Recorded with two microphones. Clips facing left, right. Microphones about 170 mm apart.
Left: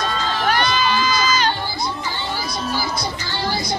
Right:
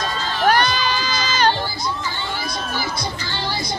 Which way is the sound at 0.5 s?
45° right (ahead or behind).